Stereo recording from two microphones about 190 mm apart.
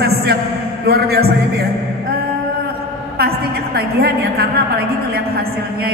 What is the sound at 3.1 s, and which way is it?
A woman's voice, 55° right (ahead or behind).